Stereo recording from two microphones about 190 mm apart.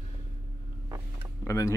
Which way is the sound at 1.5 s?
15° left (ahead or behind).